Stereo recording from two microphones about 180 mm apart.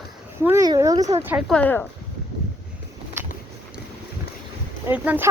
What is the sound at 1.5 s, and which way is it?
Speech, 5° left (ahead or behind).